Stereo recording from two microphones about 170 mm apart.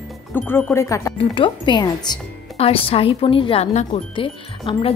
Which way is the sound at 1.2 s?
30° left (ahead or behind).